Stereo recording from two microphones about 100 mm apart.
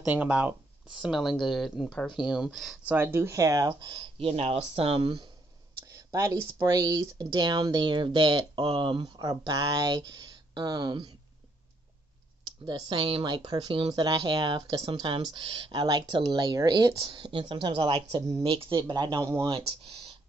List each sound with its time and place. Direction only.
0.0 s speech: 15° right (ahead or behind)
1.0 s speech: centre (ahead or behind)
2.9 s speech: 25° right (ahead or behind)
3.8 s speech: 55° right (ahead or behind)
5.8 s speech: 30° right (ahead or behind); by 11.1 s 50° right (ahead or behind)
12.4 s a sound: 50° right (ahead or behind)
12.8 s speech: 60° right (ahead or behind)
14.0 s speech: 45° right (ahead or behind)
17.0 s speech: 55° right (ahead or behind)
18.4 s speech: 65° right (ahead or behind); by 19.2 s 45° right (ahead or behind)
19.4 s speech: 70° right (ahead or behind)